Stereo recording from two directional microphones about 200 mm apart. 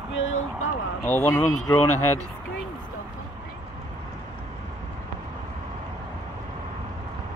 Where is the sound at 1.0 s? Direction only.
15° left (ahead or behind).